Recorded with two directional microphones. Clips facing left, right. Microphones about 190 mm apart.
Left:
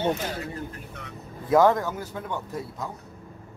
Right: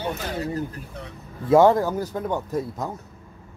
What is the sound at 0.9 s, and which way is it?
Speech, 30° right (ahead or behind).